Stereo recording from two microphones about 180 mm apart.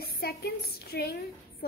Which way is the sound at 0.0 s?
60° left (ahead or behind).